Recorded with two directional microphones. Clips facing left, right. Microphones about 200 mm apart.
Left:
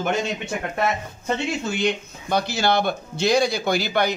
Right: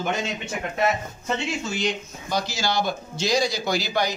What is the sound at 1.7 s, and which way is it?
Speech, 60° left (ahead or behind).